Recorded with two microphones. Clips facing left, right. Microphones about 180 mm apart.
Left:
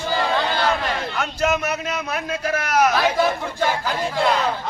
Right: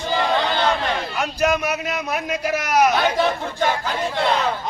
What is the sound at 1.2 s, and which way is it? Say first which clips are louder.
A man's voice: right 1 dB; 10° right (ahead or behind).